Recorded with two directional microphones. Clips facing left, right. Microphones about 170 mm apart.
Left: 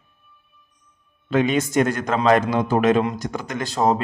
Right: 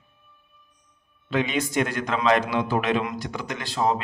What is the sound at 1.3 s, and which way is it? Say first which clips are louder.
Speech: left 5 dB; 45° left (ahead or behind).